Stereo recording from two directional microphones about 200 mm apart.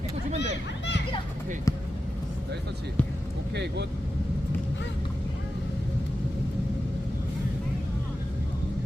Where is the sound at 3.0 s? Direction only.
5° left (ahead or behind).